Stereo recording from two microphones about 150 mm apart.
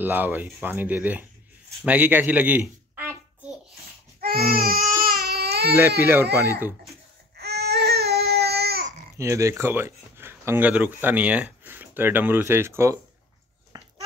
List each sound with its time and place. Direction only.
0.0 s speech: 10° right (ahead or behind)
1.9 s a sound: 10° right (ahead or behind)
4.2 s baby cry: 85° right
5.8 s speech: 15° right (ahead or behind)
7.3 s baby cry: 90° right
9.1 s speech: 20° right (ahead or behind)
13.7 s a sound: 25° right (ahead or behind)